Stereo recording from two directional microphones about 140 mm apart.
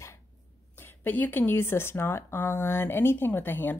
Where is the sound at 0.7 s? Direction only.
15° left (ahead or behind).